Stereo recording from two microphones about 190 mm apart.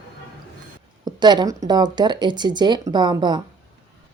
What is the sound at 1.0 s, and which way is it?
A woman's voice, 20° right (ahead or behind).